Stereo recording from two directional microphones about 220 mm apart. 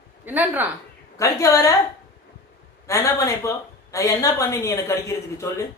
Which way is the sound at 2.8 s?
15° left (ahead or behind).